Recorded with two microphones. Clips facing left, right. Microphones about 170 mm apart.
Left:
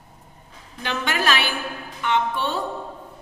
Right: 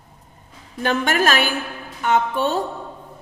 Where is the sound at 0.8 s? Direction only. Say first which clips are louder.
Right 6 dB; 50° right (ahead or behind).